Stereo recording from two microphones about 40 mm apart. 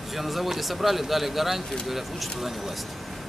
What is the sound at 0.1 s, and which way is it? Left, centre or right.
Speech, centre.